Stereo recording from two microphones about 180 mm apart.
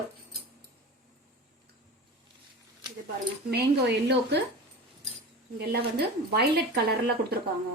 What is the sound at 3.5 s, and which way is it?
Speech, 70° right (ahead or behind).